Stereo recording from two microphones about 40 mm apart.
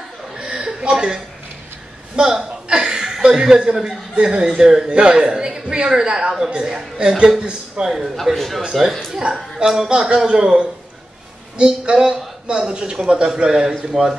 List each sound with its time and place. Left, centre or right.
0.4 s a sound: centre
2.1 s a woman's voice: centre
7.8 s a man's voice: centre
8.2 s speech: centre
9.7 s speech: centre